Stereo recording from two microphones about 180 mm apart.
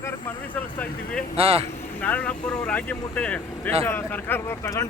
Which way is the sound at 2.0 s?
10° left (ahead or behind).